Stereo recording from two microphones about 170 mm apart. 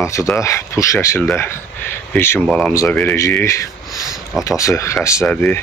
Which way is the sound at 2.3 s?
Centre (ahead or behind).